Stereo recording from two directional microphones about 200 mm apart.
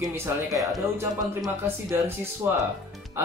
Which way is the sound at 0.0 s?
15° right (ahead or behind).